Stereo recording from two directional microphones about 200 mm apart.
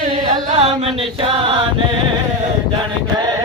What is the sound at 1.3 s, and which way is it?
Chant, 25° right (ahead or behind).